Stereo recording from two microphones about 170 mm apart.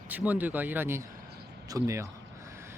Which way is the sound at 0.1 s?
10° right (ahead or behind).